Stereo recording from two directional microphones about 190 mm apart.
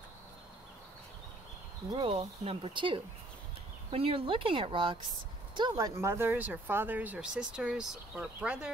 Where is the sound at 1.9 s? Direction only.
25° right (ahead or behind).